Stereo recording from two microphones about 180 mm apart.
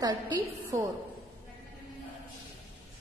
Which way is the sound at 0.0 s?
20° right (ahead or behind).